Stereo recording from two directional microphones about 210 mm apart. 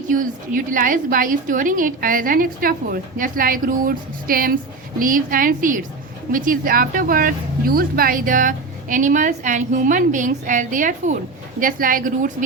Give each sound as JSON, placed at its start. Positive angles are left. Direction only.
{"t": 0.1, "sound": "a woman's voice", "side_deg": -40}